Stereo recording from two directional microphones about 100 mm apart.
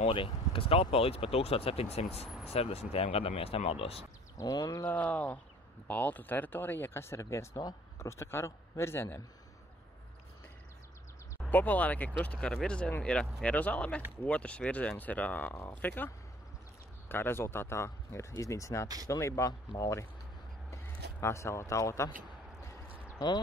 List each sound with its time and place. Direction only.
0.0 s speech: 65° left (ahead or behind); by 4.0 s 80° left
4.4 s speech: 40° left (ahead or behind)
4.8 s speech: 15° left (ahead or behind)
11.5 s speech: 15° left (ahead or behind)
17.1 s speech: 20° left (ahead or behind)
22.8 s a sound: 15° right (ahead or behind)